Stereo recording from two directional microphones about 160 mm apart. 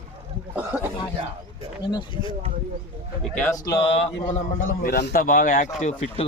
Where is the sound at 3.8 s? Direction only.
40° left (ahead or behind).